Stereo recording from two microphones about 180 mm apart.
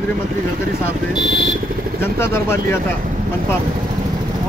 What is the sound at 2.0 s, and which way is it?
Speech, 15° left (ahead or behind).